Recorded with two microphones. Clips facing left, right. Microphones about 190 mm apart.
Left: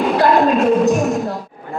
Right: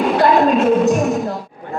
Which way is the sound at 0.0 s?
Centre (ahead or behind).